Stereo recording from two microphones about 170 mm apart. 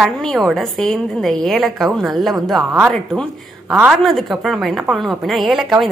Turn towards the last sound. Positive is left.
turn(degrees=0)  # may be behind; listen again after turning